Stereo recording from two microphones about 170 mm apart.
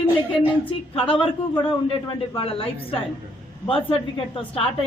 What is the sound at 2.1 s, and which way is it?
Speech, 30° left (ahead or behind).